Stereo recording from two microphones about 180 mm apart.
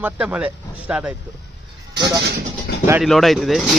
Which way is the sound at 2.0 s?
20° right (ahead or behind).